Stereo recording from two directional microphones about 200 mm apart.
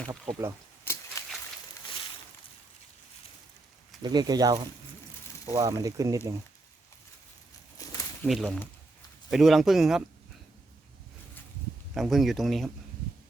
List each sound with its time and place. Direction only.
0.0 s speech: centre (ahead or behind)
1.2 s a sound: 15° left (ahead or behind)
4.0 s speech: 20° right (ahead or behind)
7.8 s a sound: 15° left (ahead or behind)
8.3 s speech: centre (ahead or behind)
11.9 s speech: centre (ahead or behind)